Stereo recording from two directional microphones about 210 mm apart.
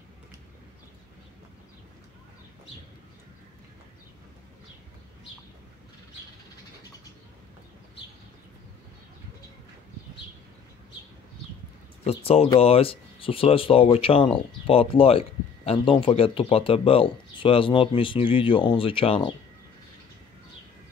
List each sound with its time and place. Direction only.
12.0 s speech: 30° left (ahead or behind)